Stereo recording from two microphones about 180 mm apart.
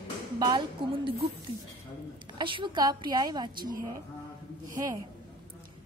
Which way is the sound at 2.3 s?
25° right (ahead or behind).